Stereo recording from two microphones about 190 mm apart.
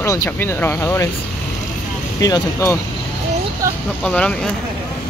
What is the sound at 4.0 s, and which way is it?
Speech, 5° left (ahead or behind).